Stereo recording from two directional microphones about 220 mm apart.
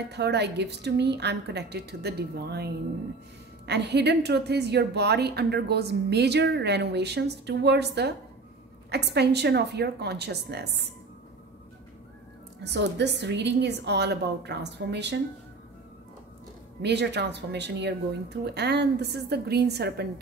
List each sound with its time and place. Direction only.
0.1 s a woman's voice: 50° right (ahead or behind)
12.6 s a woman's voice: 50° right (ahead or behind)
16.8 s a woman's voice: 50° right (ahead or behind)